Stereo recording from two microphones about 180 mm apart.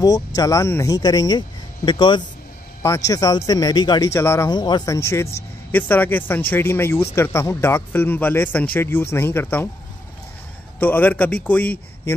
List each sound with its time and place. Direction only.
0.0 s speech: 20° left (ahead or behind)
10.8 s speech: 10° left (ahead or behind)